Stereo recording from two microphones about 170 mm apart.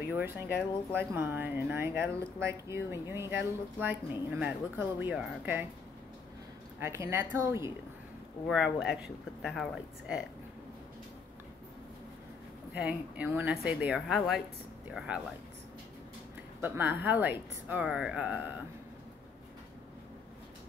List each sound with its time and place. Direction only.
0.0 s speech: 10° right (ahead or behind)
6.8 s speech: 15° right (ahead or behind)
8.5 s speech: centre (ahead or behind)
12.7 s speech: 10° right (ahead or behind)
16.6 s speech: 10° right (ahead or behind)